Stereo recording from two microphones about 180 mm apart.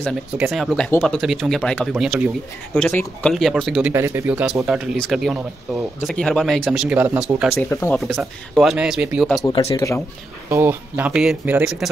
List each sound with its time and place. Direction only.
0.4 s speech: centre (ahead or behind)
2.7 s speech: 10° left (ahead or behind)
3.9 s speech: 15° right (ahead or behind)
7.5 s speech: 15° left (ahead or behind)
8.0 s speech: centre (ahead or behind)
9.8 s speech: 15° left (ahead or behind)
10.5 s speech: 10° right (ahead or behind)